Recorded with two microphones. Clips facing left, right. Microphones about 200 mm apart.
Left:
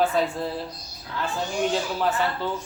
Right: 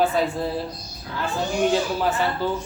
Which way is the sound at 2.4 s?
5° right (ahead or behind).